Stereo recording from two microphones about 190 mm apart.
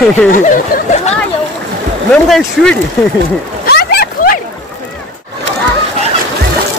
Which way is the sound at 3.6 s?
55° left (ahead or behind).